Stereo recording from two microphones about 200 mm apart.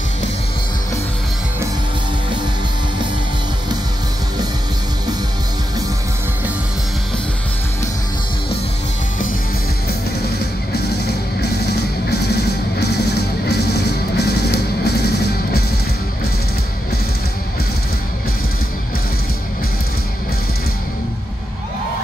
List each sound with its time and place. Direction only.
10.7 s music: 55° left (ahead or behind)